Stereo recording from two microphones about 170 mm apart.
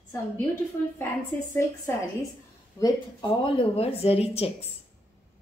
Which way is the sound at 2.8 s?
30° left (ahead or behind).